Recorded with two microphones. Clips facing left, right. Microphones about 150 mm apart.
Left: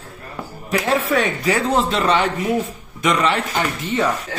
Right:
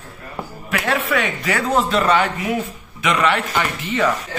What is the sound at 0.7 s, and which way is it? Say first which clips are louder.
A man's voice: left 2 dB; 35° left (ahead or behind).